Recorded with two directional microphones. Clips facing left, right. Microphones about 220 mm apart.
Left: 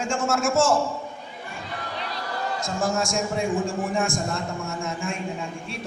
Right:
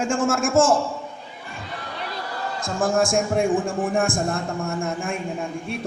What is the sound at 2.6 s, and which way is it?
A man's voice, 55° right (ahead or behind).